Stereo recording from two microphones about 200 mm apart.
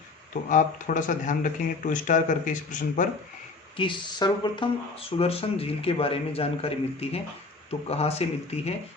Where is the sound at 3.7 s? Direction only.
25° left (ahead or behind).